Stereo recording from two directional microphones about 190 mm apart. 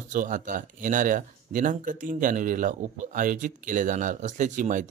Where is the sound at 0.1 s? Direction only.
45° right (ahead or behind).